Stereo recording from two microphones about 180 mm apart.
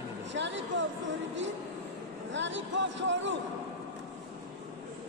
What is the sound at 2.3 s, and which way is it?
A man's voice, 90° right.